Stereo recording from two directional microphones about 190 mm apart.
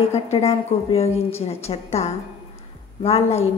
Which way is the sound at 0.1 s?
35° left (ahead or behind).